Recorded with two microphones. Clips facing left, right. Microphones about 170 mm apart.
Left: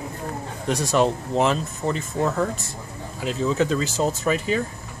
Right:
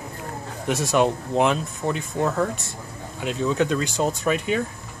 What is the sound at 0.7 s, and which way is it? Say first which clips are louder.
Speech: even; centre (ahead or behind).